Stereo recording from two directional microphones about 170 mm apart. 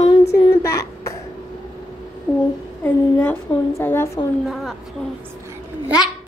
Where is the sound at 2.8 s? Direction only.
10° left (ahead or behind).